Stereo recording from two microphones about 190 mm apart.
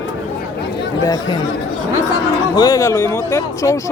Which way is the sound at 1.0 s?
20° left (ahead or behind).